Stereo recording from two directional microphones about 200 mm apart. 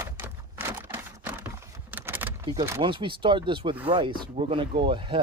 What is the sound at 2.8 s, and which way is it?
Speech, 25° right (ahead or behind).